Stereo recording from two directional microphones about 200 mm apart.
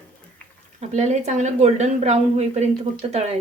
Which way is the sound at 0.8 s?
35° right (ahead or behind).